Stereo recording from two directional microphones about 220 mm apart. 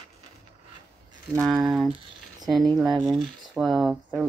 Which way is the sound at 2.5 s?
Centre (ahead or behind).